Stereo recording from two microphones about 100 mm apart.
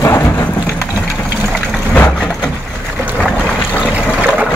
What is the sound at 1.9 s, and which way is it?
Vehicle, 15° left (ahead or behind).